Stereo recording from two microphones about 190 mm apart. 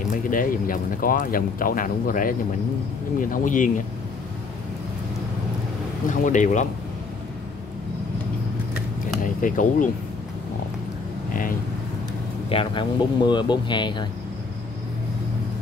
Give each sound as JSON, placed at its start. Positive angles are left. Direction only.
{"t": 0.0, "sound": "speech", "side_deg": 45}
{"t": 6.0, "sound": "speech", "side_deg": 40}
{"t": 9.2, "sound": "speech", "side_deg": 45}
{"t": 12.4, "sound": "speech", "side_deg": 25}